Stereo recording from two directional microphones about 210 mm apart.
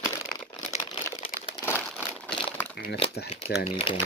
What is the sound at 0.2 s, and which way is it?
Crumpling, 5° left (ahead or behind).